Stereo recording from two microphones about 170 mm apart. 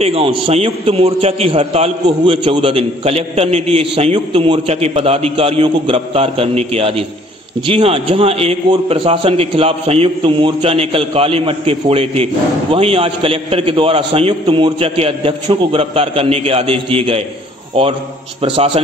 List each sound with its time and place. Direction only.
0.0 s a man's voice: 35° right (ahead or behind)